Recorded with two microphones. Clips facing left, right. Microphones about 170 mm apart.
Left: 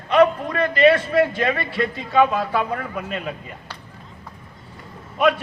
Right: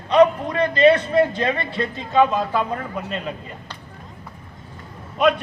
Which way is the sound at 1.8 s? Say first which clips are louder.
Even; 5° left (ahead or behind).